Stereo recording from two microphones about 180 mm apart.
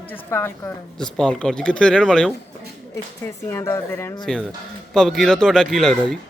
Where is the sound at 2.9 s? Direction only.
15° left (ahead or behind).